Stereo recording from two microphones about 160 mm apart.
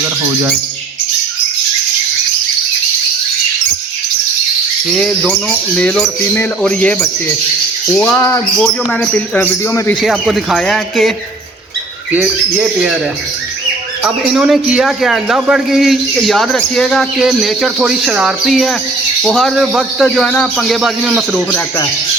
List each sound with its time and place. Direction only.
0.0 s speech: 10° right (ahead or behind)
4.9 s speech: 5° left (ahead or behind)
8.5 s speech: 5° left (ahead or behind)
10.0 s a man's voice: centre (ahead or behind)
12.1 s speech: 10° right (ahead or behind)
14.0 s a man's voice: centre (ahead or behind)